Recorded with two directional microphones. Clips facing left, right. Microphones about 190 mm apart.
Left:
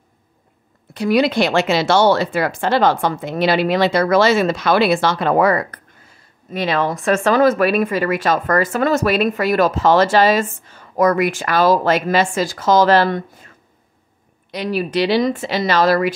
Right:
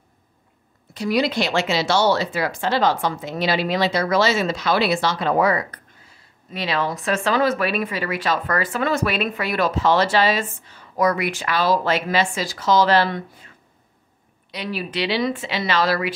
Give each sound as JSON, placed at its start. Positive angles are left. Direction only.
{"t": 0.9, "sound": "a woman's voice", "side_deg": 60}
{"t": 14.5, "sound": "speech", "side_deg": 45}